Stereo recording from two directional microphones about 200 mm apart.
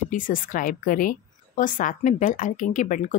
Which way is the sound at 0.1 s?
45° left (ahead or behind).